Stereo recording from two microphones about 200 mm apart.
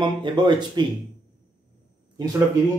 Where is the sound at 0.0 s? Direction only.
25° right (ahead or behind).